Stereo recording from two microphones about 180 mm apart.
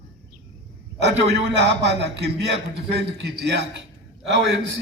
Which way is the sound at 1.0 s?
75° right (ahead or behind).